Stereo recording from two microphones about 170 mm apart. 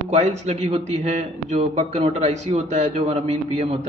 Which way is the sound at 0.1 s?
40° right (ahead or behind).